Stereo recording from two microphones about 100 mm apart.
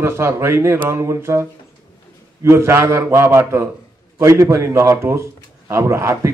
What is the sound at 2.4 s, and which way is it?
A man's voice, 25° right (ahead or behind).